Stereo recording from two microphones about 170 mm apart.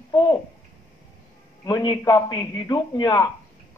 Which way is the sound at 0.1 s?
25° left (ahead or behind).